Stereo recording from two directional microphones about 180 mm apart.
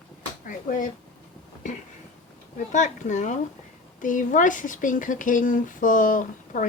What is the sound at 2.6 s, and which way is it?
A woman's voice, 45° left (ahead or behind).